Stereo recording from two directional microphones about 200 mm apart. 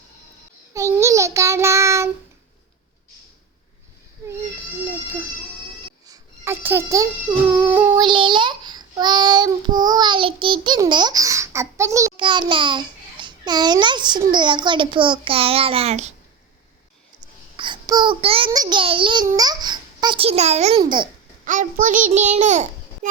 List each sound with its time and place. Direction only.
0.7 s child singing: 15° right (ahead or behind)
6.1 s a sound: 10° right (ahead or behind)
7.5 s child singing: 5° right (ahead or behind)
7.9 s a child's voice: 25° right (ahead or behind)
17.6 s a child's voice: 20° right (ahead or behind)
21.4 s a child's voice: 40° right (ahead or behind)